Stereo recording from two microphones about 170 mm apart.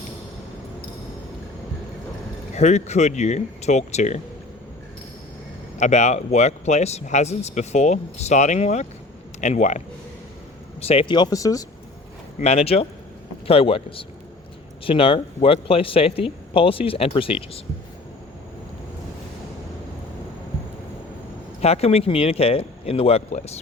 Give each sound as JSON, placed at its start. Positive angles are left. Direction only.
{"t": 2.6, "sound": "speech", "side_deg": 40}
{"t": 5.7, "sound": "a man's voice", "side_deg": 40}
{"t": 12.4, "sound": "speech", "side_deg": 35}
{"t": 21.6, "sound": "speech", "side_deg": 35}